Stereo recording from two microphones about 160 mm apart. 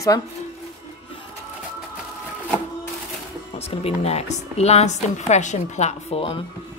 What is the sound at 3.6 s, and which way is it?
A woman's voice, 40° left (ahead or behind).